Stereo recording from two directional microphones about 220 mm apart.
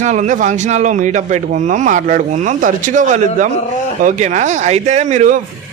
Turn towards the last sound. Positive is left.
turn(degrees=-35)  # may be behind; listen again after turning